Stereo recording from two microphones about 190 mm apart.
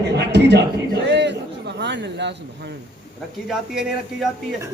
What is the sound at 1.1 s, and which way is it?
Chatter, 65° right (ahead or behind).